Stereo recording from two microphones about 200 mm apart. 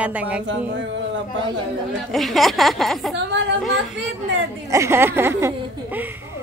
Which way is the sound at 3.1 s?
60° right (ahead or behind).